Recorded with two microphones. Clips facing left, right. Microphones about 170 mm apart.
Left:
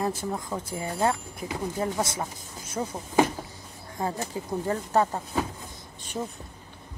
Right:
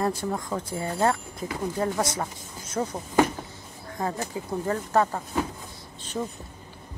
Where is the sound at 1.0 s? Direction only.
15° left (ahead or behind).